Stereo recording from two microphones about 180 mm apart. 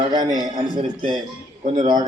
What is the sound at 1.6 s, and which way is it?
Speech, 40° right (ahead or behind).